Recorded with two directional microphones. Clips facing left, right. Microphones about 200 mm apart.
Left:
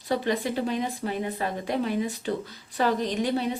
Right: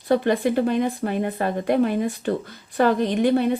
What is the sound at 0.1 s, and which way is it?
Speech, 55° right (ahead or behind).